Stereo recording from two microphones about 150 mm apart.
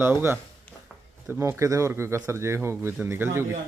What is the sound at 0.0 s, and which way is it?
Speech, 15° right (ahead or behind).